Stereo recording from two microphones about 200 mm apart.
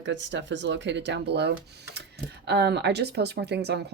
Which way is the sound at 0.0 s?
65° right (ahead or behind).